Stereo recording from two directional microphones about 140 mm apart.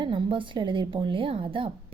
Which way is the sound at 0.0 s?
35° right (ahead or behind).